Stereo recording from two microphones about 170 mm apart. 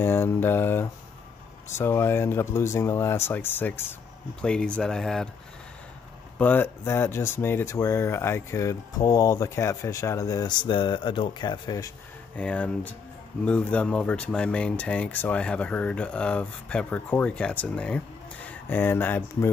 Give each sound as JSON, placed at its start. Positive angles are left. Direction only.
{"t": 0.0, "sound": "speech", "side_deg": 15}
{"t": 6.3, "sound": "speech", "side_deg": 10}
{"t": 12.4, "sound": "speech", "side_deg": 10}